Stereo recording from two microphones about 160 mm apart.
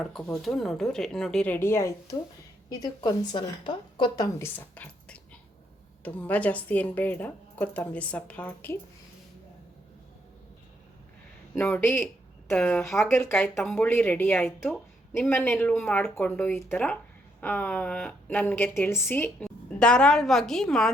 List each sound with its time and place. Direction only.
0.0 s a woman's voice: centre (ahead or behind)
11.5 s a woman's voice: 15° left (ahead or behind)
13.1 s a woman's voice: 15° left (ahead or behind)